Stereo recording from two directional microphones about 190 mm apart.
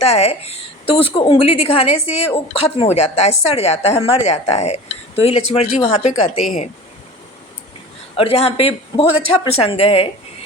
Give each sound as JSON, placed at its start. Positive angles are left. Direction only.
{"t": 0.0, "sound": "a woman's voice", "side_deg": 35}
{"t": 8.1, "sound": "a woman's voice", "side_deg": 30}